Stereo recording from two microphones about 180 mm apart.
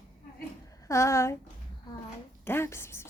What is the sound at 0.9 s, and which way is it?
Speech, 15° left (ahead or behind).